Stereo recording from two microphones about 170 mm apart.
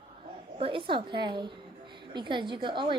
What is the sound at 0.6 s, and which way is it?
A woman's voice, 30° right (ahead or behind).